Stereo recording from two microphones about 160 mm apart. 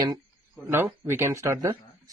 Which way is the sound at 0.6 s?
15° right (ahead or behind).